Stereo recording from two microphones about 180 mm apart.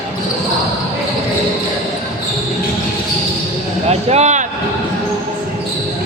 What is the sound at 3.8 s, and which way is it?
Speech, 40° right (ahead or behind).